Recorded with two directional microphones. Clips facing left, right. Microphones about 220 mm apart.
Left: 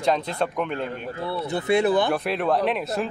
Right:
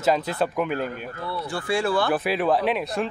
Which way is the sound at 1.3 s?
20° left (ahead or behind).